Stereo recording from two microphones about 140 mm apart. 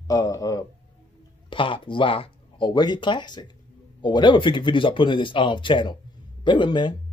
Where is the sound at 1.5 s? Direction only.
40° left (ahead or behind).